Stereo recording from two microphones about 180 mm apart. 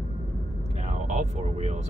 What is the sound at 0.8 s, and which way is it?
Speech, 40° right (ahead or behind).